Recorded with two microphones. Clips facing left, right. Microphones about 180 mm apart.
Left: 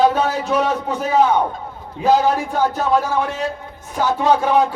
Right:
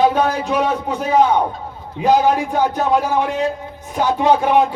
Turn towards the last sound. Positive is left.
turn(degrees=-15)  # may be behind; listen again after turning